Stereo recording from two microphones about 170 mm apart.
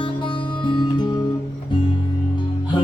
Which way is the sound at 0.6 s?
25° left (ahead or behind).